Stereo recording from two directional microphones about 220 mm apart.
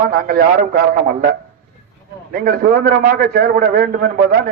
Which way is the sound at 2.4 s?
45° right (ahead or behind).